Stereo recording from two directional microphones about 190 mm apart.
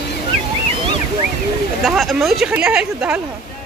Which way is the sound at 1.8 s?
Centre (ahead or behind).